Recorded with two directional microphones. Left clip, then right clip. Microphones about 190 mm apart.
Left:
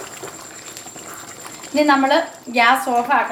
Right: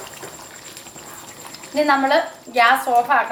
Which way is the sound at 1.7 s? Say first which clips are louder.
Left 1 dB; 20° left (ahead or behind).